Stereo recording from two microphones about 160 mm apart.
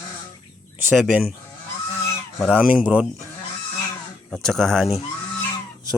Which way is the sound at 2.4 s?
5° right (ahead or behind).